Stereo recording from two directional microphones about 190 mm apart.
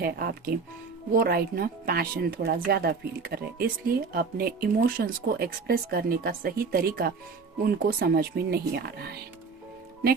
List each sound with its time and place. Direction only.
0.0 s speech: 55° right (ahead or behind)